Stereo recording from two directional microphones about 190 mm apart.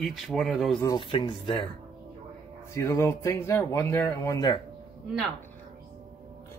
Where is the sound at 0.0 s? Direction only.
Centre (ahead or behind).